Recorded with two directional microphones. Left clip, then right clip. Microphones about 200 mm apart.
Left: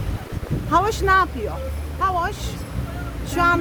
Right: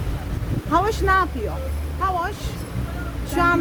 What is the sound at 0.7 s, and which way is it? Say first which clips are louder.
A woman's voice: left 2 dB; 15° left (ahead or behind).